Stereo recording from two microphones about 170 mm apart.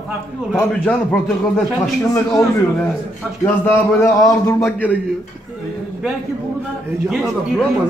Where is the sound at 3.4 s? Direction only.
10° left (ahead or behind).